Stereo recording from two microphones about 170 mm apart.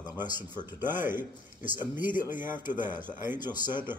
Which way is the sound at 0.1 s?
10° right (ahead or behind).